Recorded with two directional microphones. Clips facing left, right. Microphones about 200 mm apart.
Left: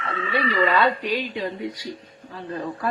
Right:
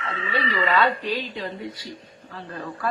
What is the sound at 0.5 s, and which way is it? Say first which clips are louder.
A woman's voice: left 1 dB; 15° left (ahead or behind).